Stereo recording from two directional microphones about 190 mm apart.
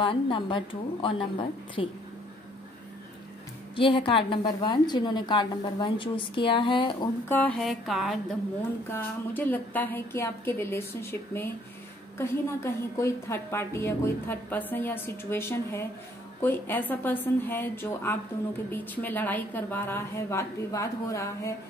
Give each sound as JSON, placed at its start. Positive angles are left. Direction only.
{"t": 0.0, "sound": "a woman's voice", "side_deg": 25}
{"t": 3.7, "sound": "a woman's voice", "side_deg": 25}
{"t": 7.2, "sound": "music", "side_deg": 10}
{"t": 8.9, "sound": "a woman's voice", "side_deg": 10}